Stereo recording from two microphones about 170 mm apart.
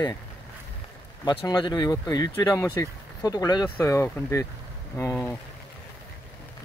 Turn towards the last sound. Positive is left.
turn(degrees=15)  # may be behind; listen again after turning